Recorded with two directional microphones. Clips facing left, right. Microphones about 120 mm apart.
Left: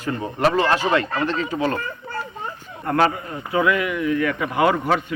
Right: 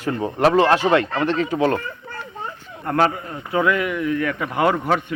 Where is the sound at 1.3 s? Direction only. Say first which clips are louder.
Right 3 dB; 70° right (ahead or behind).